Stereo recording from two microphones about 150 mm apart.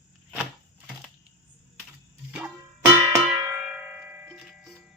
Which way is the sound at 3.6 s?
5° right (ahead or behind).